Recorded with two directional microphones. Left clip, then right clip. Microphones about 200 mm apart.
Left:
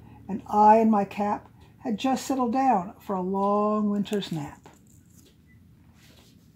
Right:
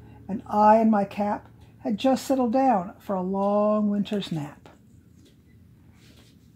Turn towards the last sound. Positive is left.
turn(degrees=-25)  # may be behind; listen again after turning